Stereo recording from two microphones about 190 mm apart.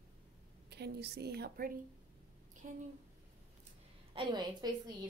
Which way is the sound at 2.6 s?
35° right (ahead or behind).